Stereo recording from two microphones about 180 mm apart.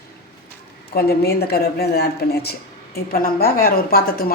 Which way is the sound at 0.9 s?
60° left (ahead or behind).